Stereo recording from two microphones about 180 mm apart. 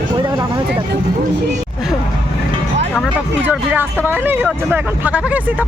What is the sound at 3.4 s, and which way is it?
Speech, 10° right (ahead or behind).